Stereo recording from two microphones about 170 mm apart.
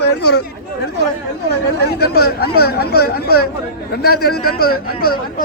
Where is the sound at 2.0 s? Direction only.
65° left (ahead or behind).